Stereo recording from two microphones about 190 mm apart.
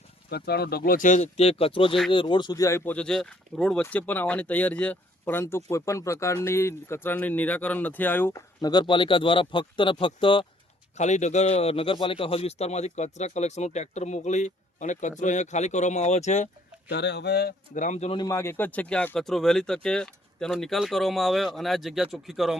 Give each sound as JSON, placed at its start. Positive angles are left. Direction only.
{"t": 0.3, "sound": "speech", "side_deg": 55}
{"t": 10.9, "sound": "a man's voice", "side_deg": 35}
{"t": 16.9, "sound": "speech", "side_deg": 65}
{"t": 18.2, "sound": "speech", "side_deg": 15}